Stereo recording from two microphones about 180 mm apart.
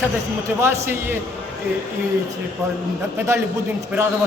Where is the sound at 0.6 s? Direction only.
10° right (ahead or behind).